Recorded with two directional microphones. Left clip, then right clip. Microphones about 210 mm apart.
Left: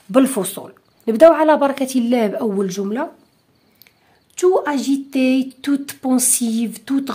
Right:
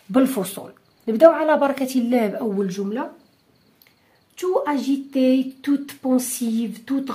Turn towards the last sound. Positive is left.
turn(degrees=45)  # may be behind; listen again after turning